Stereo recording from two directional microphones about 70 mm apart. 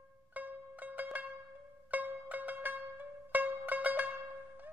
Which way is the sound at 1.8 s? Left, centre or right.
Right.